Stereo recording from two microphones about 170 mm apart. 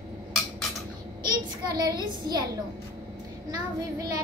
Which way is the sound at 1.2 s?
25° right (ahead or behind).